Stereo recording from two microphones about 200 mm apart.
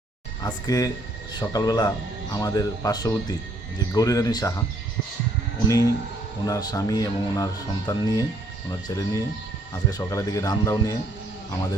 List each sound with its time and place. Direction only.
0.4 s speech: 20° left (ahead or behind)
5.6 s speech: 15° left (ahead or behind)